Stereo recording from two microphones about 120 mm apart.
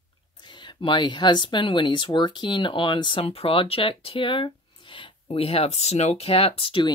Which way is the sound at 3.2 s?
55° left (ahead or behind).